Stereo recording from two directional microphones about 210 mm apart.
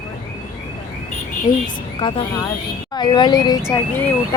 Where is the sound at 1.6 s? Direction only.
25° left (ahead or behind).